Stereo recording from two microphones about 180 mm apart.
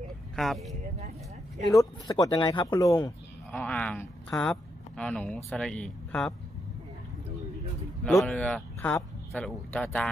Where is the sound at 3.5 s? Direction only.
5° left (ahead or behind).